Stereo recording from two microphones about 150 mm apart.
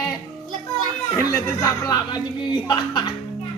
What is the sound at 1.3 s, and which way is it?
Speech, 20° left (ahead or behind).